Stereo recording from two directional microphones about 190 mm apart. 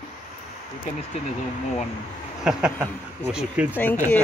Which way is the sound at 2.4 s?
5° right (ahead or behind).